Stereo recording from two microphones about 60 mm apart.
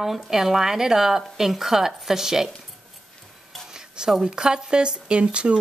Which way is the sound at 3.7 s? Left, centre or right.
Centre.